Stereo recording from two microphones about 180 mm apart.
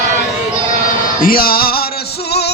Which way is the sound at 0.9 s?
50° left (ahead or behind).